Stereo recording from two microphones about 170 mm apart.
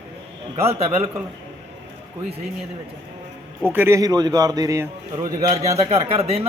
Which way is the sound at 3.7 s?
15° right (ahead or behind).